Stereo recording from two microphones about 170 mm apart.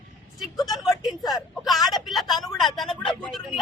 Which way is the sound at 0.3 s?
Centre (ahead or behind).